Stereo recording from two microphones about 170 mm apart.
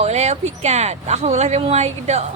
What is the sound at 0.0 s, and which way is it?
Speech, 40° right (ahead or behind).